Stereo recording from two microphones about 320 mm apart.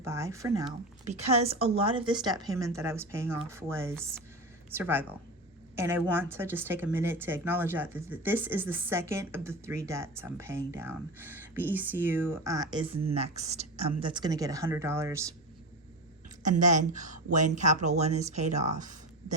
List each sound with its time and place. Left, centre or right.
0.0 s speech: centre
16.4 s speech: right